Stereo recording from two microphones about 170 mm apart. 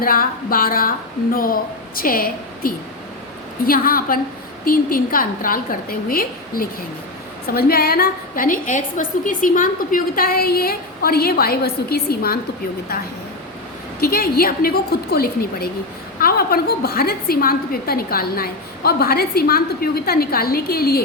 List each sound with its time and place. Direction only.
0.0 s a woman's voice: 60° left (ahead or behind)
14.0 s a woman's voice: 60° left (ahead or behind)